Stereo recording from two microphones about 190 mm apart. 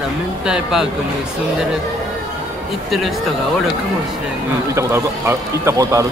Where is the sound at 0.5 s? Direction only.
Centre (ahead or behind).